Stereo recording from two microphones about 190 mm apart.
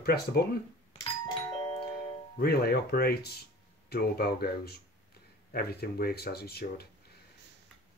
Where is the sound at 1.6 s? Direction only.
15° left (ahead or behind).